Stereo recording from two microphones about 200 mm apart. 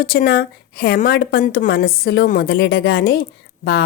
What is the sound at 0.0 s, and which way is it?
A woman's voice, 50° left (ahead or behind).